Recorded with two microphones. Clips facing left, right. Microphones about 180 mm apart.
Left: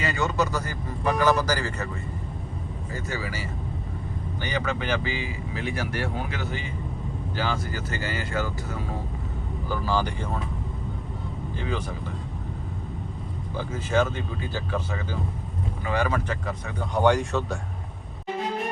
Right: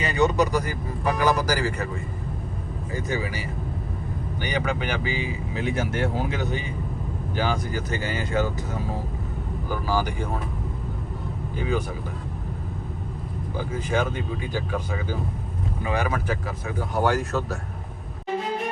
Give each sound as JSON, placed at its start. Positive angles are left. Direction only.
{"t": 0.0, "sound": "speech", "side_deg": -20}
{"t": 2.9, "sound": "speech", "side_deg": -15}
{"t": 9.6, "sound": "speech", "side_deg": -10}
{"t": 13.6, "sound": "speech", "side_deg": -15}